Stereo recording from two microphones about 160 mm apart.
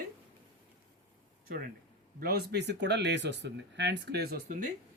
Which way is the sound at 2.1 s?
80° right.